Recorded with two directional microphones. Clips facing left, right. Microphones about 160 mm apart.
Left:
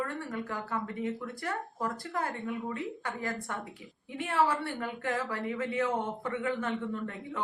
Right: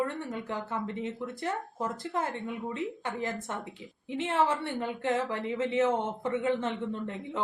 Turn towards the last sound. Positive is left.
turn(degrees=-20)  # may be behind; listen again after turning